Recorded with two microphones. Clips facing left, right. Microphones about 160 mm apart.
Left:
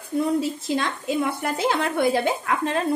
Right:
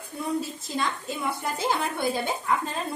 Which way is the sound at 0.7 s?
80° left.